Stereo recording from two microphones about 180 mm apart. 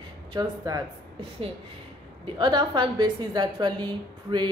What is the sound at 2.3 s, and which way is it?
Speech, 25° right (ahead or behind).